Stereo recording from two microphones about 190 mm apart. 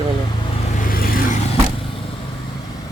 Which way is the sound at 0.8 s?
50° left (ahead or behind).